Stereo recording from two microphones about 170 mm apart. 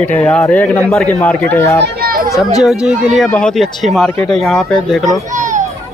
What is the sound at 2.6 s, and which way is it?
Speech, 5° right (ahead or behind).